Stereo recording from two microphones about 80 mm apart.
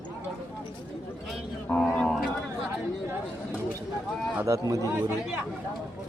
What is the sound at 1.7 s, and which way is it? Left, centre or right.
Speech, centre.